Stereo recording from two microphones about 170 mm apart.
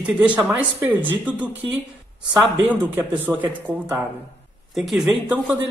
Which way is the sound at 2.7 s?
10° right (ahead or behind).